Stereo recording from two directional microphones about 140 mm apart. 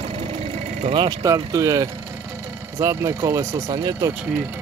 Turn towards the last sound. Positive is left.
turn(degrees=-10)  # may be behind; listen again after turning